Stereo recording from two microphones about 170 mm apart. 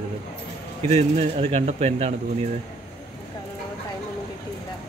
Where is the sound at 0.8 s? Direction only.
40° right (ahead or behind).